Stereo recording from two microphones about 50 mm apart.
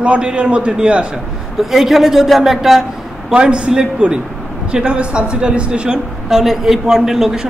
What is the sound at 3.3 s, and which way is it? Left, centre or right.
A man's voice, centre.